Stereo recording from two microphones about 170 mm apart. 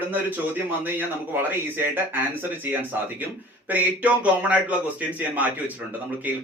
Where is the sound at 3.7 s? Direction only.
10° right (ahead or behind).